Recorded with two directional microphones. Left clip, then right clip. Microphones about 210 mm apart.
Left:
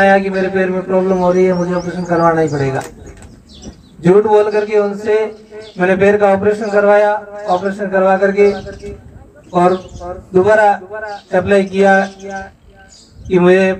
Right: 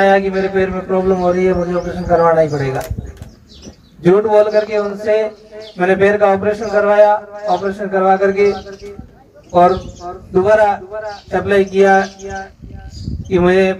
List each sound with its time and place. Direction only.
0.0 s a man's voice: 40° right (ahead or behind)
4.0 s a man's voice: 35° right (ahead or behind)